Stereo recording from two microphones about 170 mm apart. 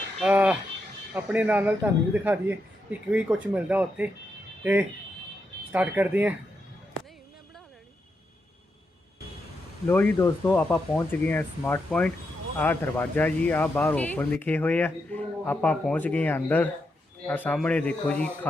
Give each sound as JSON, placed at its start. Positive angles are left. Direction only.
{"t": 0.2, "sound": "livestock", "side_deg": -5}
{"t": 1.1, "sound": "speech", "side_deg": -10}
{"t": 9.8, "sound": "speech", "side_deg": 10}